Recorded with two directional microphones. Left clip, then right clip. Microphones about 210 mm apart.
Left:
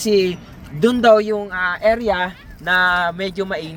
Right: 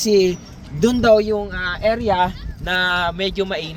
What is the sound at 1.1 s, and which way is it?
Speech, 20° right (ahead or behind).